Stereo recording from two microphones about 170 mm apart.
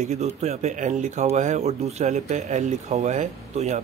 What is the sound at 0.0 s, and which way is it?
A man's voice, 40° right (ahead or behind).